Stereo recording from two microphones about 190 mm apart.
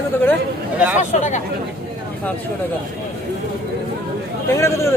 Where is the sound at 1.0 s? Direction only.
40° left (ahead or behind).